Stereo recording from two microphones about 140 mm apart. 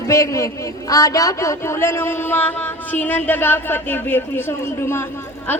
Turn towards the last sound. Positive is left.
turn(degrees=10)  # may be behind; listen again after turning